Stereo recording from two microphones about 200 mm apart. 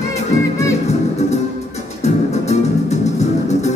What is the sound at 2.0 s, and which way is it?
Music, 35° left (ahead or behind).